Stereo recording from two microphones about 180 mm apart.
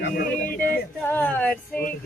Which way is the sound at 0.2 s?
50° left (ahead or behind).